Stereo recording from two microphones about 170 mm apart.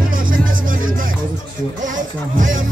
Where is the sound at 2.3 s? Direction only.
50° right (ahead or behind).